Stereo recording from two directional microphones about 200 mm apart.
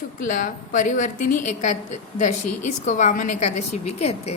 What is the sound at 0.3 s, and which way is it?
A woman's voice, 40° left (ahead or behind).